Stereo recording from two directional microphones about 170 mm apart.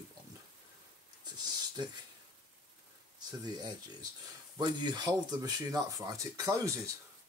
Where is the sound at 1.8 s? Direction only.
25° right (ahead or behind).